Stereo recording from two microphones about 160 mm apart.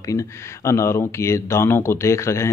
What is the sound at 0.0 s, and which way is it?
Speech, 20° left (ahead or behind).